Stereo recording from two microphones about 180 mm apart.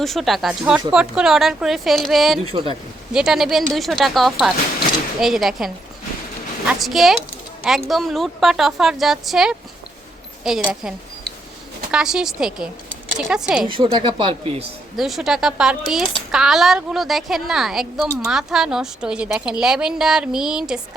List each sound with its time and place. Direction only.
0.0 s speech: centre (ahead or behind)
2.4 s speech: 30° right (ahead or behind)
3.1 s speech: 5° right (ahead or behind)
13.7 s speech: 25° right (ahead or behind)
14.9 s speech: centre (ahead or behind)